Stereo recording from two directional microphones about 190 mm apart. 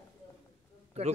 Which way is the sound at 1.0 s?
35° right (ahead or behind).